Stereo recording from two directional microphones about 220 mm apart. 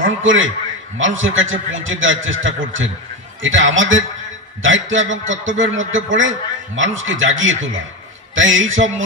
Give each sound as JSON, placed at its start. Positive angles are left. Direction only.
{"t": 0.0, "sound": "a man's voice", "side_deg": -60}